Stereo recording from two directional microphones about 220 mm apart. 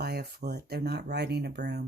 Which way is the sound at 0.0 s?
45° right (ahead or behind).